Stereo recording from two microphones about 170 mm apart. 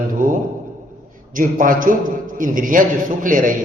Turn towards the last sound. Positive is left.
turn(degrees=-50)  # may be behind; listen again after turning